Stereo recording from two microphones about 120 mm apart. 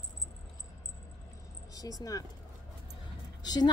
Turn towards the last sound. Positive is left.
turn(degrees=35)  # may be behind; listen again after turning